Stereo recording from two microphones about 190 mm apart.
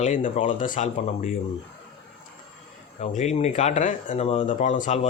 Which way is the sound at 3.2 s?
35° left (ahead or behind).